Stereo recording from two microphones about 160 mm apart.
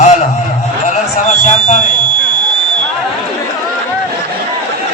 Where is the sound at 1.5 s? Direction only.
45° left (ahead or behind).